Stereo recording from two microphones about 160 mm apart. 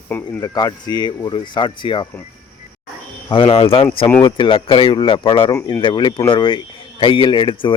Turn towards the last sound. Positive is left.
turn(degrees=30)  # may be behind; listen again after turning